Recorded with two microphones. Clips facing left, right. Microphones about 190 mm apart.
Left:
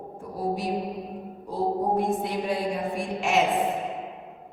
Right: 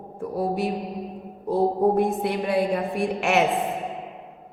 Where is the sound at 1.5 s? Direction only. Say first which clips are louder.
Right 5 dB; 60° right (ahead or behind).